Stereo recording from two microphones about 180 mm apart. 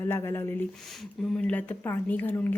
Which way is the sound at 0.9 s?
5° left (ahead or behind).